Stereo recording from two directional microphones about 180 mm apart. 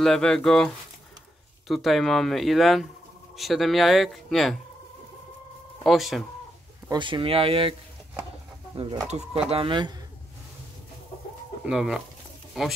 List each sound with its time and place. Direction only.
0.0 s speech: 5° left (ahead or behind)
1.7 s speech: centre (ahead or behind)
5.9 s speech: centre (ahead or behind)
6.9 s speech: 25° right (ahead or behind)
9.1 s speech: 40° right (ahead or behind)
11.6 s speech: 5° right (ahead or behind)